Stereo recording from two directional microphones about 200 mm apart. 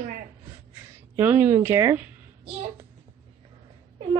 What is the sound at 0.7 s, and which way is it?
Speech, 10° right (ahead or behind).